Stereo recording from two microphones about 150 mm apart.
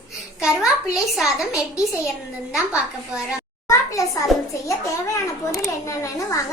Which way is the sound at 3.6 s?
20° left (ahead or behind).